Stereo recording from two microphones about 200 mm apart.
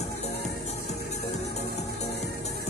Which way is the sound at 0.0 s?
35° left (ahead or behind).